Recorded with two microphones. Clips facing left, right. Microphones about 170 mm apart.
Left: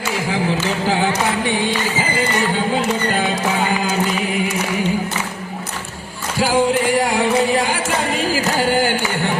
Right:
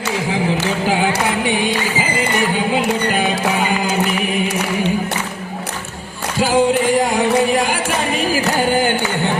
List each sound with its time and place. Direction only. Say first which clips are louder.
0.6 s a sound: right 1 dB; 15° right (ahead or behind)
4.2 s singing: right 1 dB; 20° right (ahead or behind)
6.4 s singing: right 2 dB; 20° right (ahead or behind)